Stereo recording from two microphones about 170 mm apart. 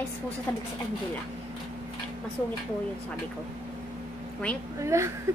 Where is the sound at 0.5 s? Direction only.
10° left (ahead or behind).